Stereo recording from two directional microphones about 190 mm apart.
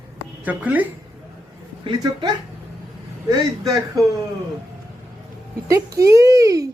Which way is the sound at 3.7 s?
15° right (ahead or behind).